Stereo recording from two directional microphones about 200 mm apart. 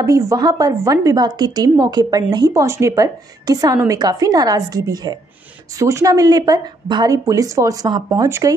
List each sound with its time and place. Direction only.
0.0 s a woman's voice: 15° right (ahead or behind)